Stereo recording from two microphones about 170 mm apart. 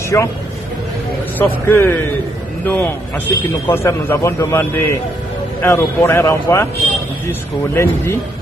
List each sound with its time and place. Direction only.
0.1 s a man's voice: 15° left (ahead or behind)
1.4 s a man's voice: 10° left (ahead or behind)